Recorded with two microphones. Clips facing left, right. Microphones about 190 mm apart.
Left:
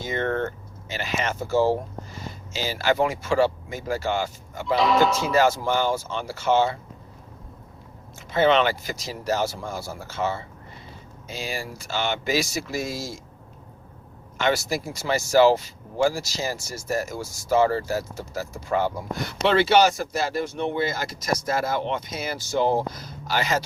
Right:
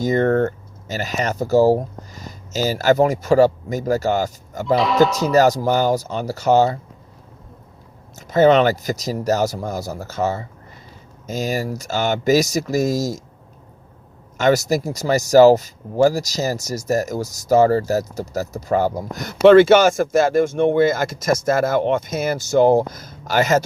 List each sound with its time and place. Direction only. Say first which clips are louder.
0.0 s speech: right 9 dB; 40° right (ahead or behind)
4.6 s speech: right 4 dB; centre (ahead or behind)
5.3 s speech: right 5 dB; 40° right (ahead or behind)
8.1 s speech: right 6 dB; 40° right (ahead or behind)
14.3 s speech: right 7 dB; 40° right (ahead or behind)